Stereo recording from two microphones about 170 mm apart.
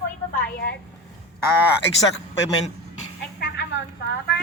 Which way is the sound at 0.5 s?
70° left (ahead or behind).